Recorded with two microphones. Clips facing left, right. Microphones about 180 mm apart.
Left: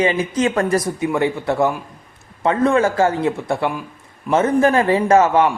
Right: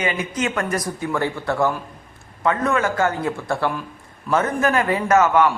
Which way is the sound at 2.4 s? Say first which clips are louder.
Left 5 dB; 30° left (ahead or behind).